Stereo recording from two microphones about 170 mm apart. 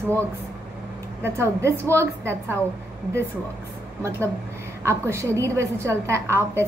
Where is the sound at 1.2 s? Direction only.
15° right (ahead or behind).